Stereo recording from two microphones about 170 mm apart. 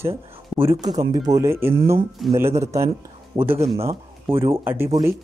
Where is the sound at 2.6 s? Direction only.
15° right (ahead or behind).